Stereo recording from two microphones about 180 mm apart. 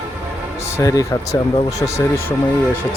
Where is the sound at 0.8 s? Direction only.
15° left (ahead or behind).